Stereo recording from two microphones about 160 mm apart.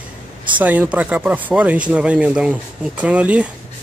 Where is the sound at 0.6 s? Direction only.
10° right (ahead or behind).